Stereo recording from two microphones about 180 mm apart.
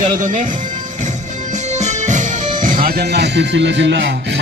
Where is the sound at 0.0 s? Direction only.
45° right (ahead or behind).